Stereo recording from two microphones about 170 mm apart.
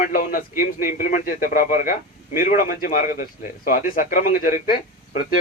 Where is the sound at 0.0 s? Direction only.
55° left (ahead or behind).